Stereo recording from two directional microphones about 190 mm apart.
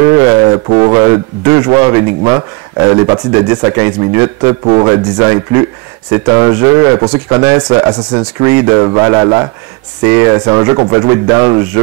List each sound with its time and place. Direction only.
0.0 s speech: 15° right (ahead or behind)